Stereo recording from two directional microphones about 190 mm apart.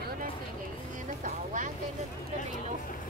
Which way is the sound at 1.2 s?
45° right (ahead or behind).